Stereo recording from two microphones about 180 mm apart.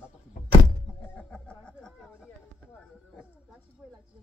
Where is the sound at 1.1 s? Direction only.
10° left (ahead or behind).